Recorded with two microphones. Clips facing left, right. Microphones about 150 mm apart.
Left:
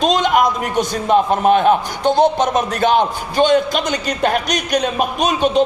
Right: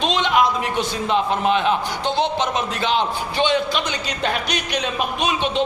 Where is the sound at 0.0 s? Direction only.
45° left (ahead or behind).